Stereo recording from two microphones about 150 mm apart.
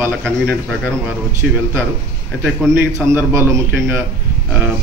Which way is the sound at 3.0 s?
15° right (ahead or behind).